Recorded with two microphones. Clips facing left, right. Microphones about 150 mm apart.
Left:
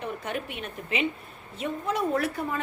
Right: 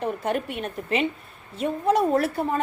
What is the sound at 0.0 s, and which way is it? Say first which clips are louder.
A woman's voice: right 7 dB; 45° right (ahead or behind).